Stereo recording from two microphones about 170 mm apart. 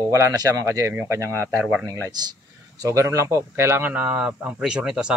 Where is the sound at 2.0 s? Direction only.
25° right (ahead or behind); by 5.1 s 5° right (ahead or behind).